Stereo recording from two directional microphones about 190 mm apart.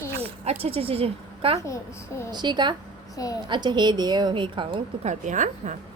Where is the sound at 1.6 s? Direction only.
15° left (ahead or behind).